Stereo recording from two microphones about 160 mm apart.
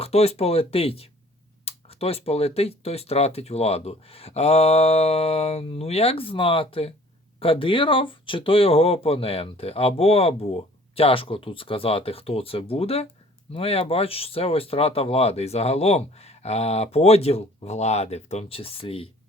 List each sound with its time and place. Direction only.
0.0 s speech: 40° left (ahead or behind)